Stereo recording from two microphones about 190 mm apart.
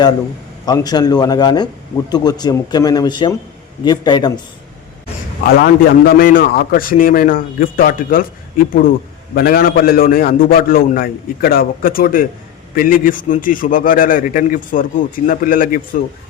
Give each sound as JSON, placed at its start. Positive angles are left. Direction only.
{"t": 0.6, "sound": "speech", "side_deg": 20}
{"t": 5.5, "sound": "a man's voice", "side_deg": 50}